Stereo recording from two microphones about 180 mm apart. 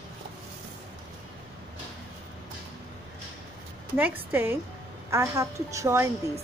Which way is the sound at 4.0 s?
10° right (ahead or behind).